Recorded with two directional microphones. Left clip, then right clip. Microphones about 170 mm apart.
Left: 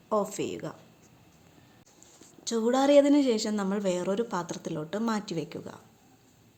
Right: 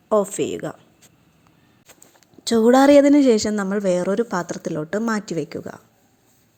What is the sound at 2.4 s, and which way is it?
A woman's voice, 40° right (ahead or behind).